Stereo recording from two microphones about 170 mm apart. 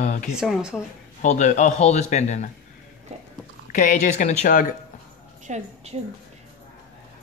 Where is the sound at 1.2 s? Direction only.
45° left (ahead or behind).